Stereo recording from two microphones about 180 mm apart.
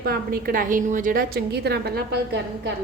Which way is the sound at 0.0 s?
55° right (ahead or behind).